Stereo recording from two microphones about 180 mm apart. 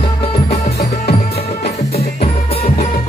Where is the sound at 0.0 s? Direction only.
30° left (ahead or behind).